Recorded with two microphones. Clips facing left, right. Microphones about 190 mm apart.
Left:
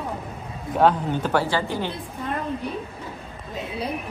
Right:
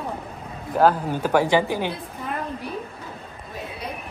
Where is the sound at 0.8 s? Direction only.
5° right (ahead or behind).